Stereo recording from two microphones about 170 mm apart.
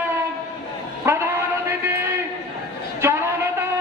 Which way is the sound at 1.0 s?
15° right (ahead or behind).